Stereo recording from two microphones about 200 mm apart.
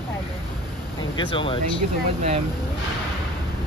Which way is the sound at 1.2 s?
25° left (ahead or behind).